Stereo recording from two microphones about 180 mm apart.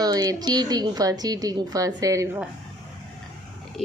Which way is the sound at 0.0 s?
20° right (ahead or behind).